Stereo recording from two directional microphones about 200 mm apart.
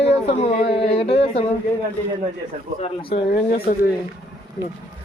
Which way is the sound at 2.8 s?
25° left (ahead or behind).